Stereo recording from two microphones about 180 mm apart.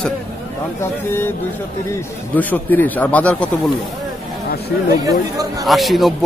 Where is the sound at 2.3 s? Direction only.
10° left (ahead or behind).